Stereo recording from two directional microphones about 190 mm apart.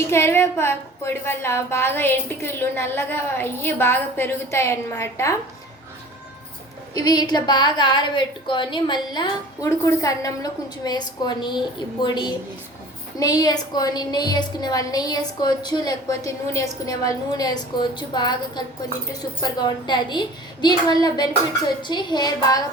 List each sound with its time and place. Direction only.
0.1 s a woman's voice: 15° left (ahead or behind)
6.9 s a woman's voice: 20° left (ahead or behind)